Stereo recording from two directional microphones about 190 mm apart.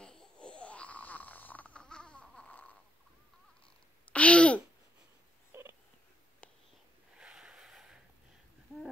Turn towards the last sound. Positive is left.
turn(degrees=-5)  # may be behind; listen again after turning